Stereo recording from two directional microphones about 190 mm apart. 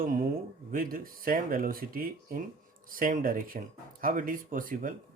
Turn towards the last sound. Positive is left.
turn(degrees=-45)  # may be behind; listen again after turning